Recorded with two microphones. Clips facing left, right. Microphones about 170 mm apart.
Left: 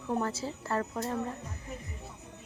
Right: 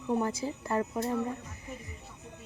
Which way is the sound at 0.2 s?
15° right (ahead or behind).